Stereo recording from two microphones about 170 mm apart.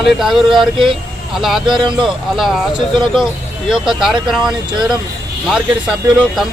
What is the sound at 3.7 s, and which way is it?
Speech, centre (ahead or behind).